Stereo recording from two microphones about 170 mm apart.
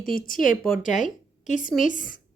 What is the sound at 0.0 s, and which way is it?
A woman's voice, 55° left (ahead or behind).